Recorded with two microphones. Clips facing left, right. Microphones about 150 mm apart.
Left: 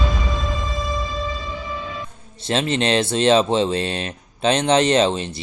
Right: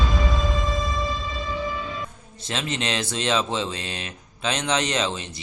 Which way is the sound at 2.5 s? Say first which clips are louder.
Left 8 dB; 30° left (ahead or behind).